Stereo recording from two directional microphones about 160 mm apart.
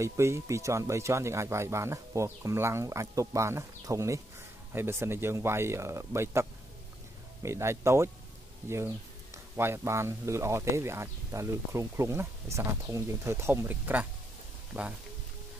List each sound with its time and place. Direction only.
0.0 s speech: 15° right (ahead or behind)
7.4 s speech: 20° right (ahead or behind)